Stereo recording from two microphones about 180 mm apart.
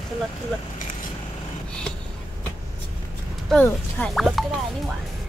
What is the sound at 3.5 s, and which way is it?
Speech, 5° left (ahead or behind).